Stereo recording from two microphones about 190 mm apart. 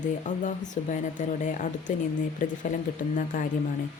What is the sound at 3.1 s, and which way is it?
Speech, 45° left (ahead or behind).